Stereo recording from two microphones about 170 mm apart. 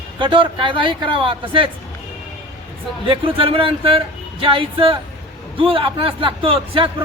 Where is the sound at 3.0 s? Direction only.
30° right (ahead or behind).